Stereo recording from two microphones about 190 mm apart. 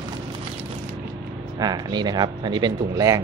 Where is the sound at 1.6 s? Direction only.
20° right (ahead or behind).